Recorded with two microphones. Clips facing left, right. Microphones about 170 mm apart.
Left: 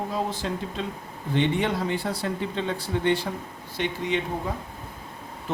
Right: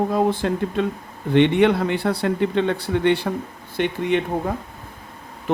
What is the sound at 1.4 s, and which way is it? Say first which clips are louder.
Speech: right 9 dB; 70° right (ahead or behind).